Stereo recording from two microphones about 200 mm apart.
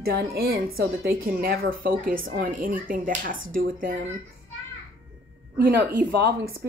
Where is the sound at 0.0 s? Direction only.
50° right (ahead or behind).